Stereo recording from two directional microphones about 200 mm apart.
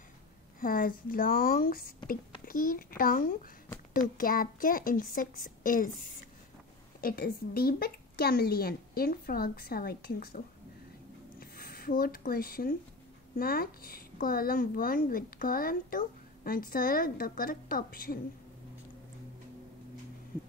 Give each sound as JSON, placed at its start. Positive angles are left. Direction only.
{"t": 0.6, "sound": "a woman's voice", "side_deg": 45}
{"t": 7.0, "sound": "a woman's voice", "side_deg": 45}
{"t": 11.3, "sound": "a sound", "side_deg": 50}
{"t": 13.4, "sound": "a woman's voice", "side_deg": 45}